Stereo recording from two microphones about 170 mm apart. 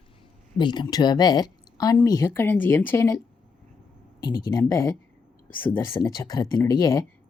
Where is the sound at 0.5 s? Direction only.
25° left (ahead or behind).